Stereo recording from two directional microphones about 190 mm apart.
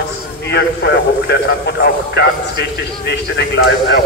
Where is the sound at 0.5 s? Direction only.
65° left (ahead or behind).